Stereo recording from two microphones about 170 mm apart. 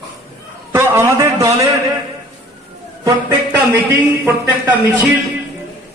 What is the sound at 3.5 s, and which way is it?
Speech, 10° right (ahead or behind).